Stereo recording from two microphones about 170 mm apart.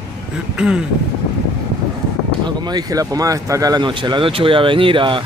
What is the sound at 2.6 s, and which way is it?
Speech, 25° right (ahead or behind).